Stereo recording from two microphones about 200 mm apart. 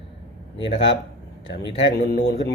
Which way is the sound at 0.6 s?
65° left (ahead or behind).